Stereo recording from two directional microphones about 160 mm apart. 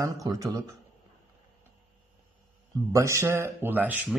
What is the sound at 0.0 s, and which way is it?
Speech, 20° right (ahead or behind).